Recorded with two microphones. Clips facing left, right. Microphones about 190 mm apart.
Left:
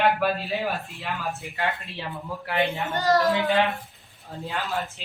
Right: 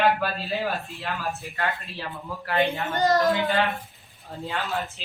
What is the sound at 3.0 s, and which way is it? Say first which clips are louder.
Speech: even; 20° right (ahead or behind).